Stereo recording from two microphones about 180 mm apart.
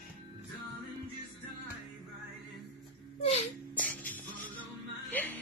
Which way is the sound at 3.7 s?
10° left (ahead or behind).